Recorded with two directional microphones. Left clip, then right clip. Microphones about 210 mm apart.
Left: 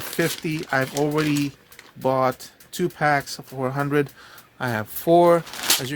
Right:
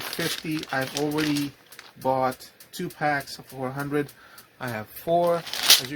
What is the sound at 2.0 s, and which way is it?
Speech, 45° left (ahead or behind).